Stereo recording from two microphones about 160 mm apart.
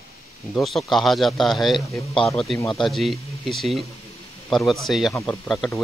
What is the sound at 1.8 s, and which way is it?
Speech, 20° left (ahead or behind).